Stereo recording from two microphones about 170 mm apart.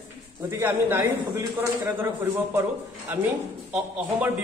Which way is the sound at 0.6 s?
15° right (ahead or behind).